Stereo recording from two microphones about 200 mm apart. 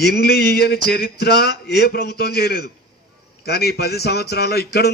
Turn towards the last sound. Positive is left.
turn(degrees=55)  # may be behind; listen again after turning